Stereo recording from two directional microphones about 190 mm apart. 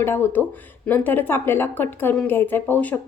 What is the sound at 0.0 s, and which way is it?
A woman's voice, 10° left (ahead or behind).